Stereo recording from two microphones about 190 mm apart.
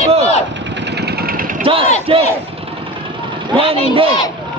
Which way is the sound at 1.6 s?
30° right (ahead or behind).